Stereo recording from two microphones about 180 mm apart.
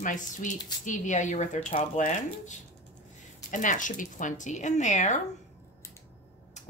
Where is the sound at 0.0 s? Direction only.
45° left (ahead or behind).